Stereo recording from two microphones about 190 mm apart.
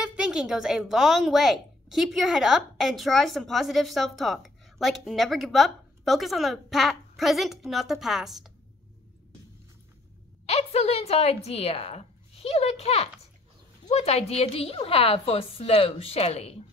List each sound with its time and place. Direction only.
0.0 s speech: 5° right (ahead or behind)
10.4 s a woman's voice: 30° left (ahead or behind)